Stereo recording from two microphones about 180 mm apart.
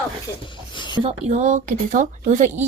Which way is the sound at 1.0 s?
40° right (ahead or behind).